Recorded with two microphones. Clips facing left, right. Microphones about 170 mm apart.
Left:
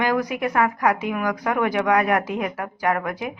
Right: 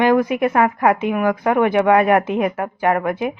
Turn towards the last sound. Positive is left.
turn(degrees=-25)  # may be behind; listen again after turning